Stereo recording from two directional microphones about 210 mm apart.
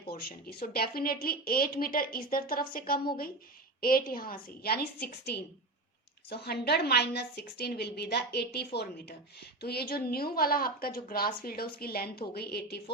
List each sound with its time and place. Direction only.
0.1 s speech: 45° left (ahead or behind)